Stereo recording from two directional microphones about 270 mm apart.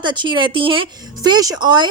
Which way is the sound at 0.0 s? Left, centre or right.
Centre.